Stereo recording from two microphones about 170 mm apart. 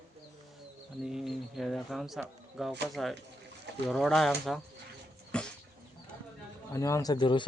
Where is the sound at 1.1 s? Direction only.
Centre (ahead or behind).